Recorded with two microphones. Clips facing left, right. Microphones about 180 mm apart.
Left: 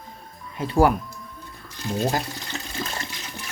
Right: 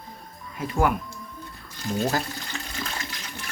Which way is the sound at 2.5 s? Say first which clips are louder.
Left 3 dB; 30° left (ahead or behind).